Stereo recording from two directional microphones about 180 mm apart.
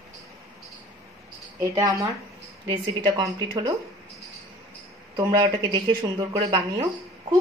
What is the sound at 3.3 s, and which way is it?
Speech, 25° right (ahead or behind).